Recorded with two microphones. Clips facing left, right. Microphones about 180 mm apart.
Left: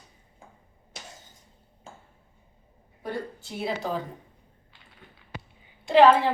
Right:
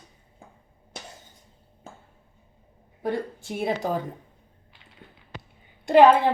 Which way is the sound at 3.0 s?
55° right (ahead or behind).